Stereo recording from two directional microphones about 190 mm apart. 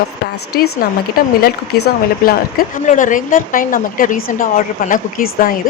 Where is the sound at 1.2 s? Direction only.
50° left (ahead or behind).